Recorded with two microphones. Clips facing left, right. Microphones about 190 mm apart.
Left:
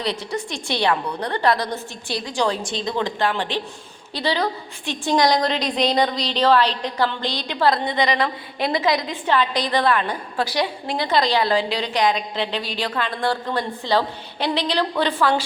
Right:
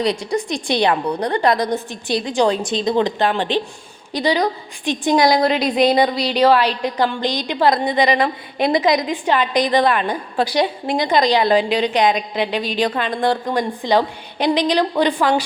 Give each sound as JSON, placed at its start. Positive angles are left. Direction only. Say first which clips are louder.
{"t": 0.0, "sound": "a woman's voice", "louder": "right 6 dB", "side_deg": -15}